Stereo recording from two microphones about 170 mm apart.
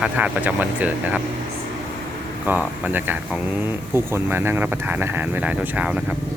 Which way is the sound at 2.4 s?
10° right (ahead or behind).